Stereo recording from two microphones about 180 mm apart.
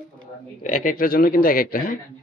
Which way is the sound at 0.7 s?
45° left (ahead or behind).